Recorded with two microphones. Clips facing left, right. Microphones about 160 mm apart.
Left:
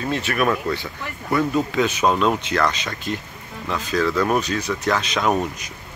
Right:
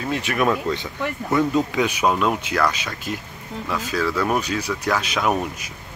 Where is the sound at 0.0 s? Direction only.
15° right (ahead or behind).